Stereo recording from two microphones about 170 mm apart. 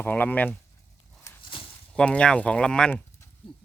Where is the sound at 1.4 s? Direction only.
30° left (ahead or behind).